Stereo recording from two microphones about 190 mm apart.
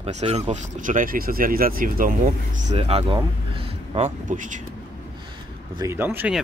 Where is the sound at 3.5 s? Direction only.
30° right (ahead or behind).